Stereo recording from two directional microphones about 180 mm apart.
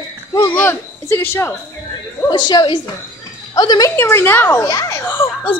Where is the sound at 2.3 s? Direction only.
25° left (ahead or behind).